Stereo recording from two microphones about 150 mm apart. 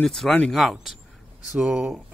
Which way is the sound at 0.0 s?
5° left (ahead or behind).